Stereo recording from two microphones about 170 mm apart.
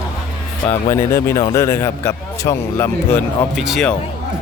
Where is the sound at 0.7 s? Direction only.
15° left (ahead or behind).